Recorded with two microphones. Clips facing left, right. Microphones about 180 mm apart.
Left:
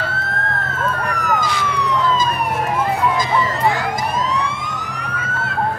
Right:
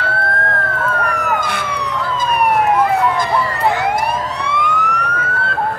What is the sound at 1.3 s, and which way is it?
Emergency vehicle, 60° right (ahead or behind).